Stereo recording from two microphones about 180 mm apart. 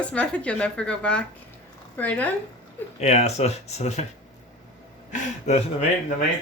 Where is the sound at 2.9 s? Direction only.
40° left (ahead or behind).